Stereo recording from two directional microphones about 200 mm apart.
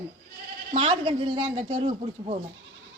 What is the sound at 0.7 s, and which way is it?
A woman's voice, 30° right (ahead or behind).